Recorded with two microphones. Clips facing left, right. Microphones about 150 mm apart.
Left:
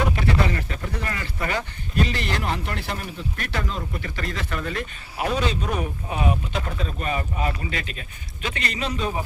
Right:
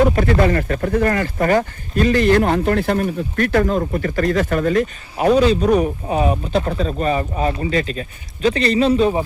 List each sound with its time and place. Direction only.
0.2 s speech: 50° right (ahead or behind); by 9.2 s 30° right (ahead or behind)